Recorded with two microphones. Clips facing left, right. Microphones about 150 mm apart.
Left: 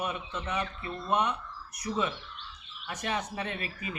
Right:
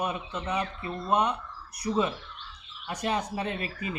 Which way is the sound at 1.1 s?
10° right (ahead or behind).